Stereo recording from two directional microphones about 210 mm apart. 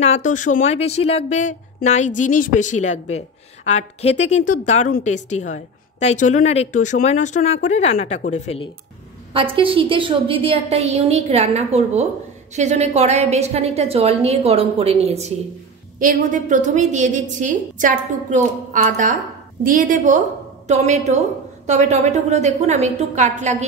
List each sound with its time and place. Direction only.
0.0 s a woman's voice: 35° left (ahead or behind)
9.3 s a woman's voice: 25° right (ahead or behind)